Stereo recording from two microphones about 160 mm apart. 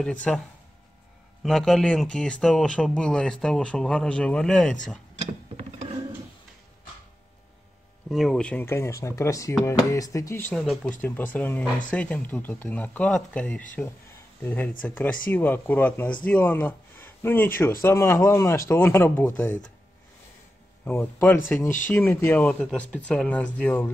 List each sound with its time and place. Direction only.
0.0 s speech: 5° left (ahead or behind)
1.4 s speech: centre (ahead or behind)
5.6 s a sound: 40° right (ahead or behind)
8.1 s speech: centre (ahead or behind); by 10.5 s 20° left (ahead or behind)
10.5 s speech: 5° left (ahead or behind)
20.8 s speech: 5° left (ahead or behind)